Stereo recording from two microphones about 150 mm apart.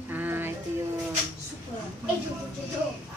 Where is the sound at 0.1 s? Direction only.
15° right (ahead or behind).